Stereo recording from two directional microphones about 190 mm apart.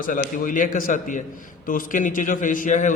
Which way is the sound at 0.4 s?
45° left (ahead or behind).